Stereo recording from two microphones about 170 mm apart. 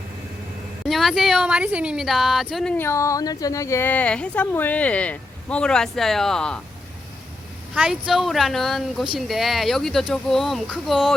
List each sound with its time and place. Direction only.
0.9 s speech: centre (ahead or behind)
2.7 s speech: 15° left (ahead or behind)
7.8 s speech: centre (ahead or behind)